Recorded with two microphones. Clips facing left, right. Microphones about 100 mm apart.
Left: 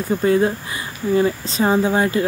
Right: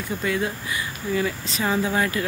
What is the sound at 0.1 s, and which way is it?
Speech, 35° left (ahead or behind).